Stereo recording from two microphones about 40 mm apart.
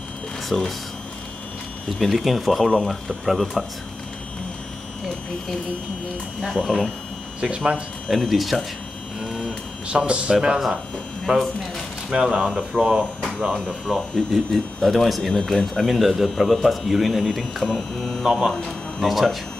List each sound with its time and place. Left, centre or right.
0.5 s speech: centre
1.9 s speech: centre
6.6 s speech: left
7.3 s speech: right
8.3 s speech: centre
9.8 s speech: right
13.9 s speech: centre
15.3 s speech: centre